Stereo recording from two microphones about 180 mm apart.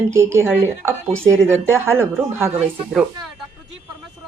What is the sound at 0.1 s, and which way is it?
Speech, 15° right (ahead or behind).